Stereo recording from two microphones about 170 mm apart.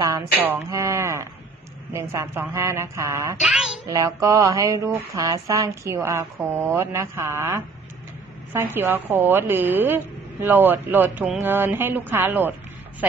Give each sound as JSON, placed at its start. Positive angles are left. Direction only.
{"t": 0.4, "sound": "a sound", "side_deg": -15}
{"t": 1.9, "sound": "a woman's voice", "side_deg": -15}
{"t": 3.3, "sound": "child singing", "side_deg": 0}
{"t": 3.8, "sound": "a woman's voice", "side_deg": -20}